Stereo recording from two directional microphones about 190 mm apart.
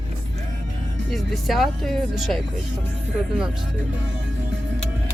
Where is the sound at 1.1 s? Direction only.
Centre (ahead or behind).